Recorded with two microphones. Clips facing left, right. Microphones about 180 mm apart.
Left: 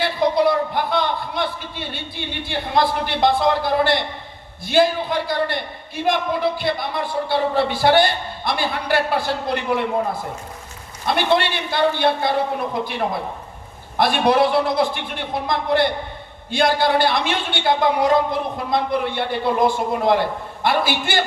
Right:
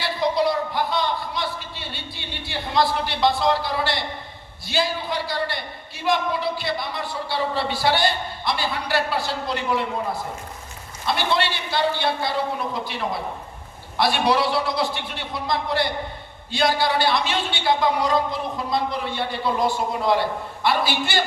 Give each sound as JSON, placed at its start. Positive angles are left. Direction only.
{"t": 0.0, "sound": "a man's voice", "side_deg": 55}
{"t": 11.0, "sound": "a man's voice", "side_deg": 55}